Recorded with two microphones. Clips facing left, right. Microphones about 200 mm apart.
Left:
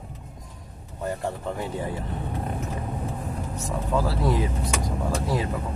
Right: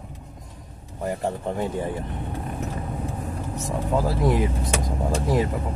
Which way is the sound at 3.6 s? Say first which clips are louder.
Right 2 dB; 15° right (ahead or behind).